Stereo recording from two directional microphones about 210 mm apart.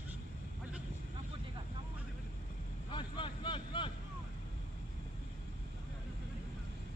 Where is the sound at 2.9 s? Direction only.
25° left (ahead or behind).